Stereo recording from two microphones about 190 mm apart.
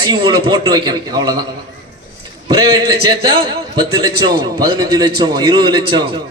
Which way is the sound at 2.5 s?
20° right (ahead or behind).